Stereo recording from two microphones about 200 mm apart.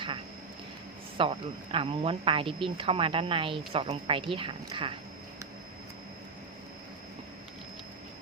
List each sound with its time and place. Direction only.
1.2 s a woman's voice: 25° right (ahead or behind)